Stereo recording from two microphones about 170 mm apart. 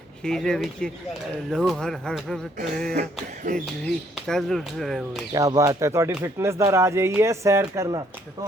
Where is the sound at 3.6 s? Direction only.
5° left (ahead or behind).